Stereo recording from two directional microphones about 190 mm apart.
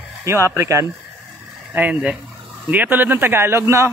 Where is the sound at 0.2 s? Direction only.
15° right (ahead or behind).